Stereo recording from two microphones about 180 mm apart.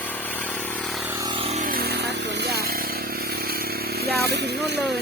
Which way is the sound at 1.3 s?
30° right (ahead or behind).